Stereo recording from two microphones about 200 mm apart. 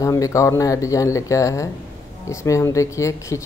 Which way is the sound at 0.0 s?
15° left (ahead or behind).